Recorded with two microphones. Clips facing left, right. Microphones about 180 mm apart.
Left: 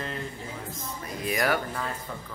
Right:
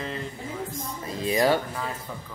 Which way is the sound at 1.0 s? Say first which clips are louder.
Right 5 dB; 25° right (ahead or behind).